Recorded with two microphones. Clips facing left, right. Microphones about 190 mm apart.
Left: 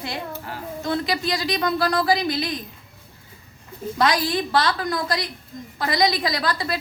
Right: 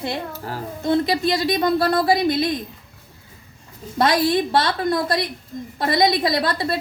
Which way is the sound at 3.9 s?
25° right (ahead or behind).